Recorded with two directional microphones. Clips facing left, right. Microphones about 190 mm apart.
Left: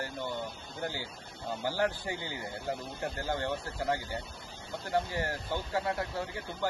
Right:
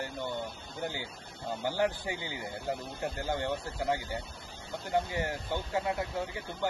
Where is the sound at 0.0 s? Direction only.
20° right (ahead or behind).